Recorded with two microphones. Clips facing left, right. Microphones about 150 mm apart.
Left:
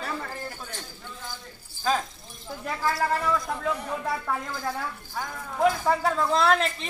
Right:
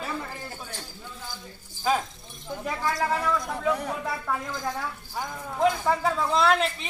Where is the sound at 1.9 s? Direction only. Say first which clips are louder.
Right 1 dB; 10° right (ahead or behind).